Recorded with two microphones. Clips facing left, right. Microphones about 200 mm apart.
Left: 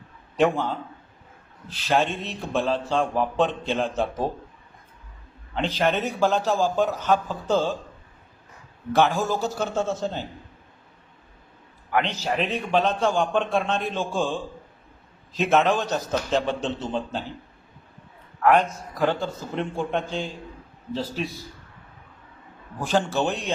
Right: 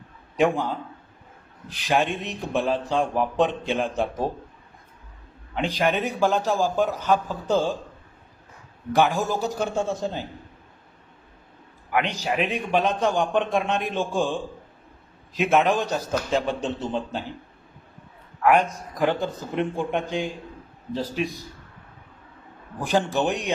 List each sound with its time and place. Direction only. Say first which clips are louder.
0.3 s a man's voice: even; 10° right (ahead or behind)
5.6 s a man's voice: even; 15° right (ahead or behind)
8.9 s a man's voice: even; 15° right (ahead or behind)
11.9 s a man's voice: even; 10° right (ahead or behind)
18.4 s a man's voice: even; 10° right (ahead or behind)
22.8 s a man's voice: right 1 dB; 15° right (ahead or behind)